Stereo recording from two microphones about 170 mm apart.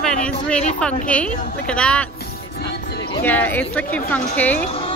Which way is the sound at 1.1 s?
5° left (ahead or behind).